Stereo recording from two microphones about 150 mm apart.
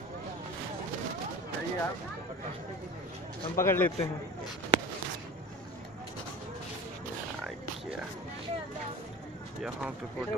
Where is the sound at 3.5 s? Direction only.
15° left (ahead or behind).